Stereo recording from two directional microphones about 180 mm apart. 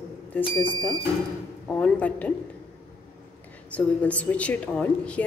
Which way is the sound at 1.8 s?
5° left (ahead or behind).